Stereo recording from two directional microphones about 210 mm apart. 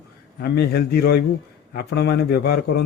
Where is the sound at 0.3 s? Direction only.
50° left (ahead or behind).